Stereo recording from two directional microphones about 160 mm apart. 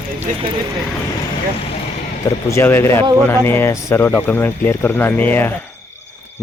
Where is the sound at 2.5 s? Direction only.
15° left (ahead or behind).